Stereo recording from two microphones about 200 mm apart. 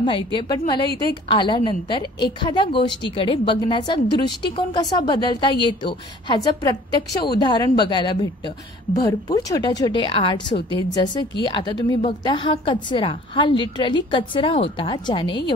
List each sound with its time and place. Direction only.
0.0 s a woman's voice: 25° left (ahead or behind)